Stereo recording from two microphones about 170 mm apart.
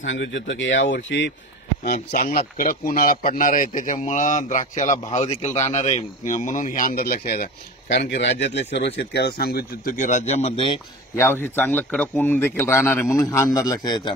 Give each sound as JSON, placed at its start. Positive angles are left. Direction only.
{"t": 0.0, "sound": "speech", "side_deg": 90}
{"t": 2.0, "sound": "speech", "side_deg": 55}
{"t": 8.0, "sound": "speech", "side_deg": 85}
{"t": 8.7, "sound": "speech", "side_deg": 80}
{"t": 11.1, "sound": "a man's voice", "side_deg": 15}